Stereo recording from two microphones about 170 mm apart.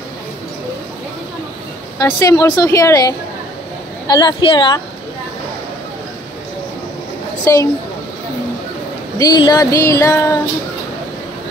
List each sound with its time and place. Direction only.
2.0 s speech: 20° left (ahead or behind)
7.5 s speech: 15° left (ahead or behind)
9.2 s speech: 25° left (ahead or behind)